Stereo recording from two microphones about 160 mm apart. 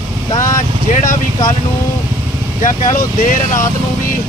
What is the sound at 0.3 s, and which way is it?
Vehicle, 55° left (ahead or behind).